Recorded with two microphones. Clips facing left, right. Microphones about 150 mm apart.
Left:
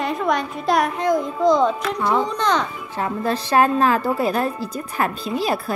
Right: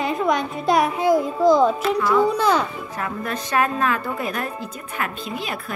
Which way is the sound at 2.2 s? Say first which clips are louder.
Right 2 dB; 5° right (ahead or behind).